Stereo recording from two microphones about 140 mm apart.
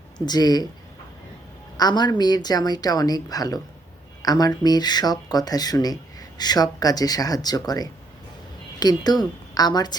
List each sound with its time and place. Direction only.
0.3 s speech: 30° left (ahead or behind)
1.7 s a woman's voice: 30° left (ahead or behind)